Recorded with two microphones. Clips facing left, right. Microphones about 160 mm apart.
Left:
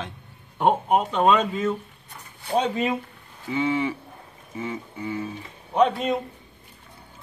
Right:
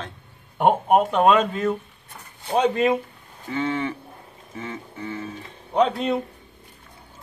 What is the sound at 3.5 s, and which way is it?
Speech, 5° left (ahead or behind).